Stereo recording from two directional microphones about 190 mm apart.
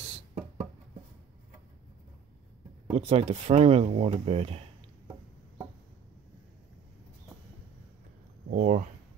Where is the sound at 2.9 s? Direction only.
35° right (ahead or behind).